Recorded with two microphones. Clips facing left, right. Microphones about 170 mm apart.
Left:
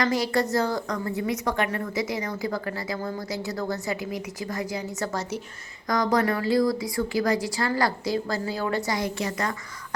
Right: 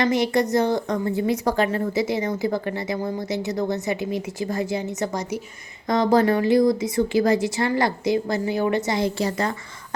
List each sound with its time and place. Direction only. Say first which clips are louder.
0.0 s a woman's voice: right 4 dB; 20° right (ahead or behind)
5.9 s a woman's voice: right 5 dB; 25° right (ahead or behind)